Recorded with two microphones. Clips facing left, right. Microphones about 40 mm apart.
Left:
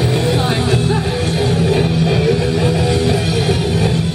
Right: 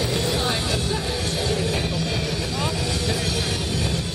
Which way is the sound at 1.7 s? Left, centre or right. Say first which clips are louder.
Left 10 dB; left.